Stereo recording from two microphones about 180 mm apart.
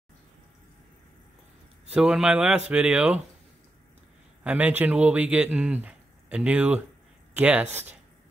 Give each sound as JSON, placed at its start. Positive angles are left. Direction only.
{"t": 2.0, "sound": "speech", "side_deg": -5}
{"t": 4.4, "sound": "speech", "side_deg": -5}